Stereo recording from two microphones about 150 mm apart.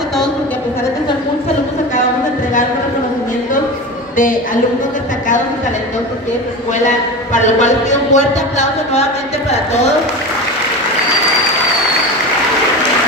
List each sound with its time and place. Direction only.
7.3 s speech: 50° left (ahead or behind)